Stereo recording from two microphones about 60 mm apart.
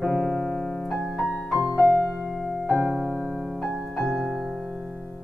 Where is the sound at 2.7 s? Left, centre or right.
Right.